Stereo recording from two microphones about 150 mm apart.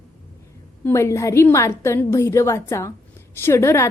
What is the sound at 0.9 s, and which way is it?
A woman's voice, 20° left (ahead or behind).